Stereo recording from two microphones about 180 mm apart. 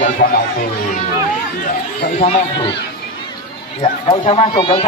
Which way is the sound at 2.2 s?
30° left (ahead or behind).